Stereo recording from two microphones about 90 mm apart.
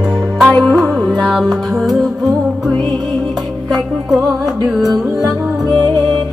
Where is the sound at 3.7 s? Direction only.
Centre (ahead or behind).